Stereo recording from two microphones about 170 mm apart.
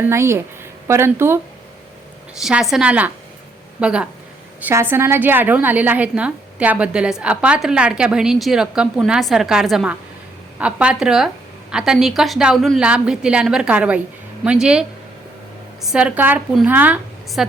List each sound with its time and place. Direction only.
0.0 s a woman's voice: 15° right (ahead or behind)
2.4 s a woman's voice: 5° right (ahead or behind)